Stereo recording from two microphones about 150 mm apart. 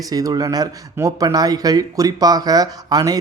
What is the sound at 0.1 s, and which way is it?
A man's voice, 25° right (ahead or behind).